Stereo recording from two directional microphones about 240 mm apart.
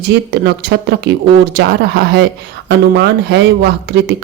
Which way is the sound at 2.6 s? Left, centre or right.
Right.